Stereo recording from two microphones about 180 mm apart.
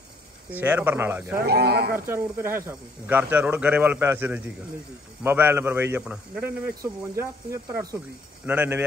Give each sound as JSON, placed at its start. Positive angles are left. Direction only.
{"t": 0.5, "sound": "a man's voice", "side_deg": -10}
{"t": 1.3, "sound": "speech", "side_deg": -60}
{"t": 2.0, "sound": "a man's voice", "side_deg": -15}